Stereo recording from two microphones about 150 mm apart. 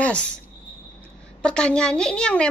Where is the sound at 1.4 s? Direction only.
5° left (ahead or behind).